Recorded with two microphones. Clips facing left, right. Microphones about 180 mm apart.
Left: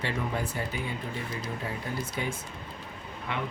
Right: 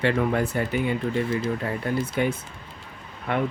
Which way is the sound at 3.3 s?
55° right (ahead or behind).